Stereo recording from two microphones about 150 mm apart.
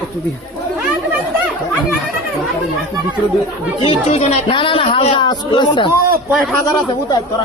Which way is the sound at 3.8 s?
40° left (ahead or behind).